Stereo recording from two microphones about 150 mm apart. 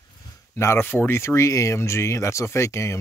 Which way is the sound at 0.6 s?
15° left (ahead or behind).